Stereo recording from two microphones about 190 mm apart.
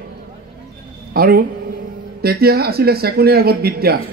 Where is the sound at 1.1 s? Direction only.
50° right (ahead or behind).